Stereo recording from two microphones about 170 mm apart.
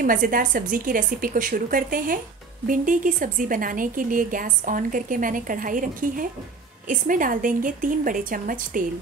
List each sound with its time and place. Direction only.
0.0 s a woman's voice: 55° right (ahead or behind)